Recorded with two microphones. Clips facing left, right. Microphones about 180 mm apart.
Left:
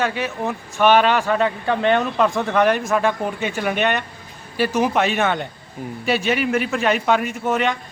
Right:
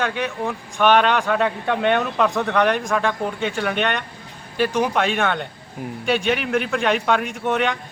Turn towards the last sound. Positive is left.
turn(degrees=0)  # may be behind; listen again after turning